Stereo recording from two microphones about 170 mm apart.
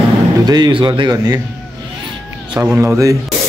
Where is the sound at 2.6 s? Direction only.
15° right (ahead or behind).